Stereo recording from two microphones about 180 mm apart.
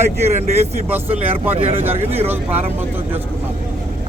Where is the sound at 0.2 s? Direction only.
40° right (ahead or behind).